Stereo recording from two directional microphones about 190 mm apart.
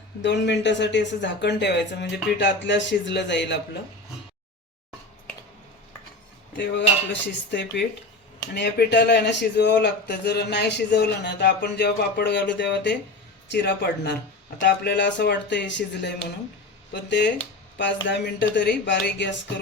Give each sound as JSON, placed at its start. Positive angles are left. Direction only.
{"t": 0.2, "sound": "speech", "side_deg": 65}
{"t": 6.6, "sound": "speech", "side_deg": 65}